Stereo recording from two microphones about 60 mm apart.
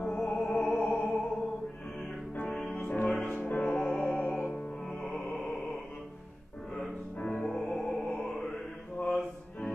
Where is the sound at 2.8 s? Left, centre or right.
Left.